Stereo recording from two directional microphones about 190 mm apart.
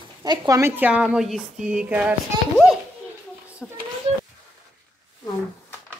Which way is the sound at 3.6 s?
5° left (ahead or behind).